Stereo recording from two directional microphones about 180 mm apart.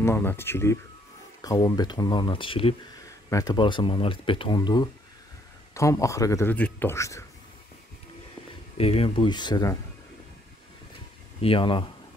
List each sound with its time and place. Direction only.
0.0 s speech: 10° left (ahead or behind)
8.7 s speech: 35° left (ahead or behind)
11.4 s speech: 30° left (ahead or behind)